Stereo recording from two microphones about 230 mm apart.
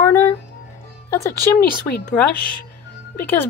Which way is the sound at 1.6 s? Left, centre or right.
Left.